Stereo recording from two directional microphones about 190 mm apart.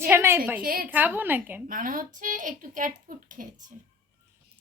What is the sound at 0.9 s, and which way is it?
Speech, 10° right (ahead or behind).